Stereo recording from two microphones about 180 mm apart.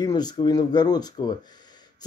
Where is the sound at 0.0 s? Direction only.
20° left (ahead or behind).